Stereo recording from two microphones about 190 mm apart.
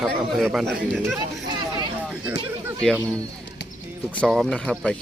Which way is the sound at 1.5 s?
25° right (ahead or behind).